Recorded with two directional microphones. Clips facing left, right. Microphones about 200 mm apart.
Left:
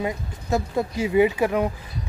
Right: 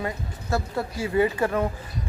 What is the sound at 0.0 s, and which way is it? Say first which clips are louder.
Speech: left 3 dB; 15° left (ahead or behind).